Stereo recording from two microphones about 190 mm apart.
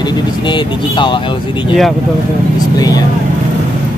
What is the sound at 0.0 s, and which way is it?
Speech, 25° left (ahead or behind).